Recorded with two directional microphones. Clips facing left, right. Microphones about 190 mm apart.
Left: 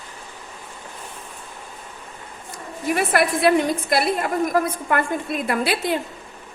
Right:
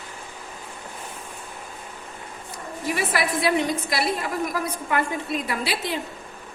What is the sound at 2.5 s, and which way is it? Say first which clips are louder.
A woman's voice: left 4 dB; 50° left (ahead or behind).